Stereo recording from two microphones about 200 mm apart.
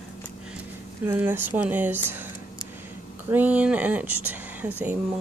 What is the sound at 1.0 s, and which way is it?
Speech, 10° right (ahead or behind).